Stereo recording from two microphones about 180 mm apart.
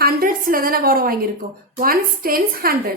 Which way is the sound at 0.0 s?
55° right (ahead or behind).